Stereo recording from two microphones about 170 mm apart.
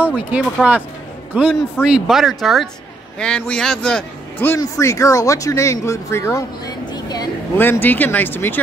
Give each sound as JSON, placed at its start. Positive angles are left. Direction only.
{"t": 0.0, "sound": "a man's voice", "side_deg": -10}
{"t": 7.5, "sound": "a man's voice", "side_deg": 10}